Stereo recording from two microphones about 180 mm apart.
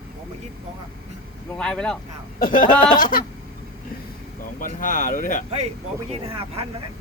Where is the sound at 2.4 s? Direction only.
50° left (ahead or behind).